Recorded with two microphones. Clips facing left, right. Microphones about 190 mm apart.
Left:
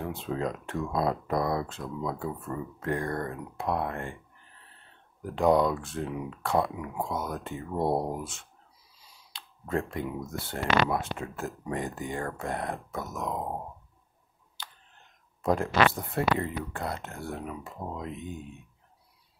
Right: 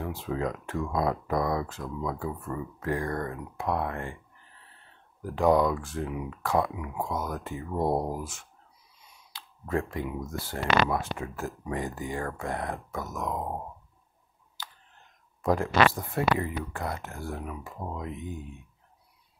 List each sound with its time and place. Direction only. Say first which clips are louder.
0.0 s speech: even; 25° left (ahead or behind)
5.2 s speech: even; 25° left (ahead or behind)
7.8 s speech: even; 5° left (ahead or behind)
8.1 s speech: even; 25° left (ahead or behind)
9.0 s clicking: right 1 dB; 30° left (ahead or behind)
10.3 s speech: right 1 dB; 25° left (ahead or behind)
13.4 s speech: even; 5° left (ahead or behind)
15.4 s speech: right 1 dB; 20° left (ahead or behind)